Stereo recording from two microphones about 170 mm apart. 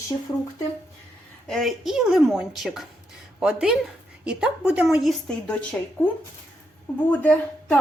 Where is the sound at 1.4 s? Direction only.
Centre (ahead or behind).